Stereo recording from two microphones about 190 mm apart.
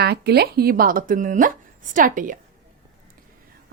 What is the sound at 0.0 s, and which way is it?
Speech, 60° right (ahead or behind).